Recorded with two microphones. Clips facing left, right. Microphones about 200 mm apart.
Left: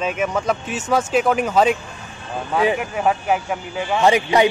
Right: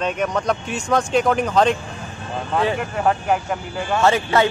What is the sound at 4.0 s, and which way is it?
Speech, 15° left (ahead or behind).